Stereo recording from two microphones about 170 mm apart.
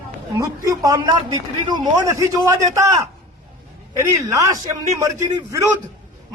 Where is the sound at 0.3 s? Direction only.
20° right (ahead or behind).